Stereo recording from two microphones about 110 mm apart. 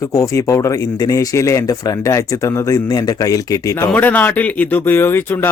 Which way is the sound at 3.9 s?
15° left (ahead or behind).